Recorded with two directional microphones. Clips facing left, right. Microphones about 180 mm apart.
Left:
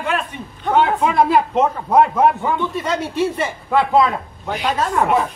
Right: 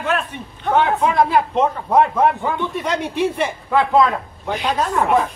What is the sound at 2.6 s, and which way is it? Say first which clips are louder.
Speech: left 1 dB; 15° right (ahead or behind).